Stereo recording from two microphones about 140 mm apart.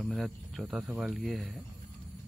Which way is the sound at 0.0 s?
Centre (ahead or behind).